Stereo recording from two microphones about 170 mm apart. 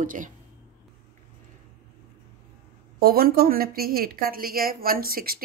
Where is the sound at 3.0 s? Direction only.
60° right (ahead or behind).